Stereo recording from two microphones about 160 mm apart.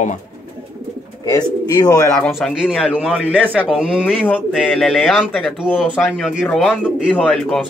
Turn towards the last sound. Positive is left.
turn(degrees=5)  # may be behind; listen again after turning